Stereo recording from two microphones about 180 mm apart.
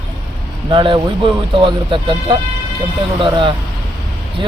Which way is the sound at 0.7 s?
25° right (ahead or behind).